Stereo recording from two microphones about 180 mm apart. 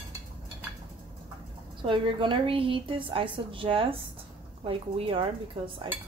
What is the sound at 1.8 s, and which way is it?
A woman's voice, 30° right (ahead or behind).